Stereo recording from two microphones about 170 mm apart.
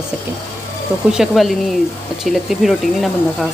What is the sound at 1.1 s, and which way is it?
A woman's voice, centre (ahead or behind).